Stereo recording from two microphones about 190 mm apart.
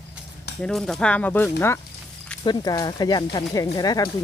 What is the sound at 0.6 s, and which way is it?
Speech, centre (ahead or behind).